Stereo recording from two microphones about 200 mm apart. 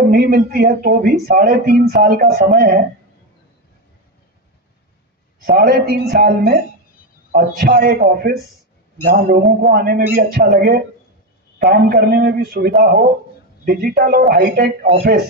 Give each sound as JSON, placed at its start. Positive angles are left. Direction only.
{"t": 0.1, "sound": "speech", "side_deg": -50}
{"t": 5.4, "sound": "speech", "side_deg": -50}